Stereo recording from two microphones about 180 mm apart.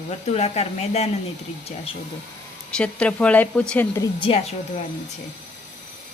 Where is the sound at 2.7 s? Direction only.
5° left (ahead or behind).